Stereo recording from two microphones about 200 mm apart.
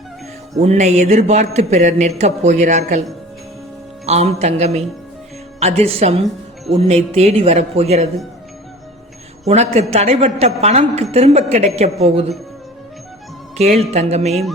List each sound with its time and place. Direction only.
0.6 s a woman's voice: 35° right (ahead or behind)
4.0 s a woman's voice: 30° right (ahead or behind)
9.4 s a woman's voice: 35° right (ahead or behind)
13.6 s a woman's voice: 35° right (ahead or behind)